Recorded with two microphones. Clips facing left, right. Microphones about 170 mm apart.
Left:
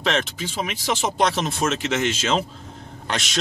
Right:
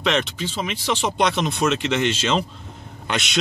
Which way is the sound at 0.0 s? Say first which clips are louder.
Right 1 dB; centre (ahead or behind).